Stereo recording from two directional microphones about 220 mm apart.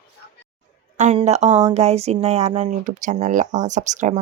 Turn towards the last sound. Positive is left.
turn(degrees=-35)  # may be behind; listen again after turning